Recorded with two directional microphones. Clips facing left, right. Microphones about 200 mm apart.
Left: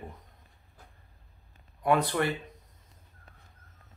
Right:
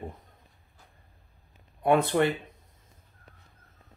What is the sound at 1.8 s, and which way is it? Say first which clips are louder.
Speech: right 3 dB; 25° right (ahead or behind).